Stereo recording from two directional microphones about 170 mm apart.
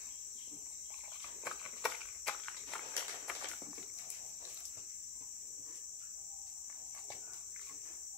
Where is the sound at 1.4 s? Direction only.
Centre (ahead or behind).